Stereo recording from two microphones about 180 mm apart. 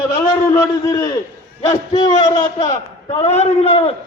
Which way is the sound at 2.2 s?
25° left (ahead or behind).